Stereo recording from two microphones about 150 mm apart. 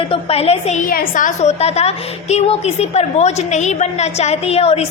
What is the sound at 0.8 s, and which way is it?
A woman's voice, 65° left (ahead or behind).